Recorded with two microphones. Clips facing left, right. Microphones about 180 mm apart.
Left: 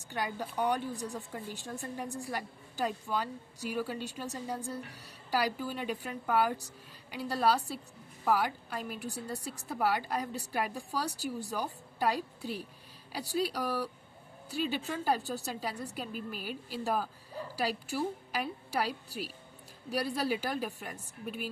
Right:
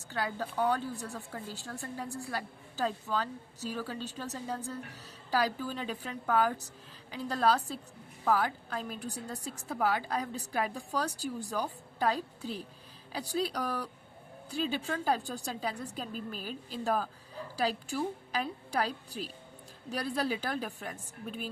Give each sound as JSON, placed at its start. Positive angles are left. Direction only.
{"t": 0.1, "sound": "a woman's voice", "side_deg": 15}
{"t": 15.0, "sound": "a woman's voice", "side_deg": 5}